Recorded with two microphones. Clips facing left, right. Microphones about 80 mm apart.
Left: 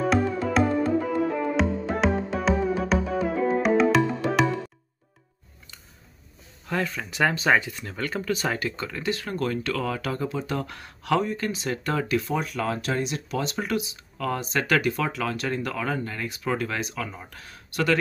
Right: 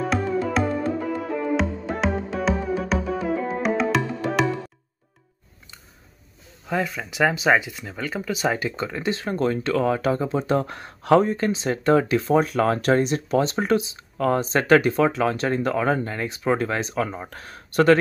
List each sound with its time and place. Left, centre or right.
0.0 s music: centre
6.7 s speech: centre; by 17.9 s right